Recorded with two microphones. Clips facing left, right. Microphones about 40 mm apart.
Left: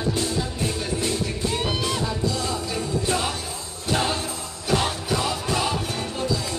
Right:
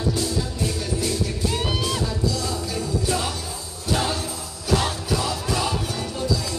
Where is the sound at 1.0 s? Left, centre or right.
Left.